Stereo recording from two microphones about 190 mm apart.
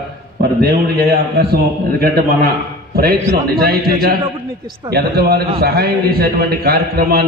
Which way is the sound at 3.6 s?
55° right (ahead or behind).